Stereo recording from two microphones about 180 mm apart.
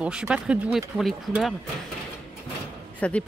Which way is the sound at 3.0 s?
5° left (ahead or behind).